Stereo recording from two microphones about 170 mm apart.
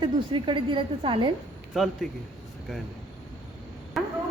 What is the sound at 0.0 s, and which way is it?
A woman's voice, 30° right (ahead or behind).